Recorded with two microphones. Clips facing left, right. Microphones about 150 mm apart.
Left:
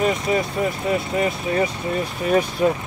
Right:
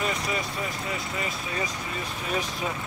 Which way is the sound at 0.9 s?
60° left (ahead or behind).